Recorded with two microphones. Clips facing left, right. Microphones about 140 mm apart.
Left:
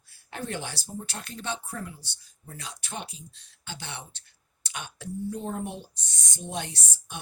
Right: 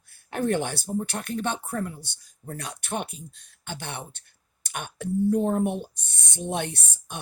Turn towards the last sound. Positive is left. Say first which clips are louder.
# right 3 dB
turn(degrees=-55)  # may be behind; listen again after turning